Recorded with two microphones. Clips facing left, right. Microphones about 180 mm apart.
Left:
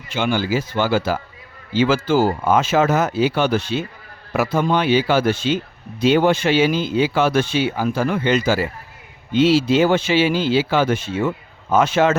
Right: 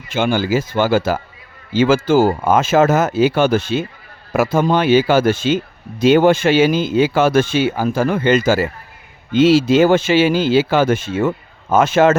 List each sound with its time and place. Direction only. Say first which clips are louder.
0.1 s speech: right 3 dB; 50° right (ahead or behind)